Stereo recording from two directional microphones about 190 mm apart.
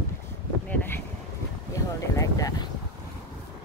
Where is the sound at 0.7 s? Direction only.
10° left (ahead or behind).